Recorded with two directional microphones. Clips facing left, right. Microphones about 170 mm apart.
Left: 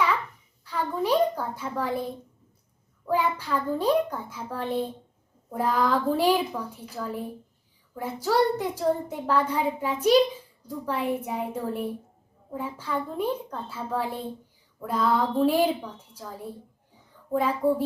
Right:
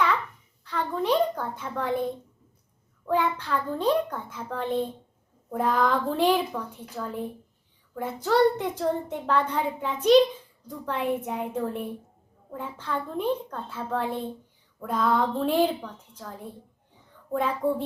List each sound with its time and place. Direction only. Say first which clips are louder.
0.6 s a child's voice: even; 5° left (ahead or behind)
3.1 s a child's voice: even; 10° left (ahead or behind)
17.3 s a child's voice: left 2 dB; 5° left (ahead or behind)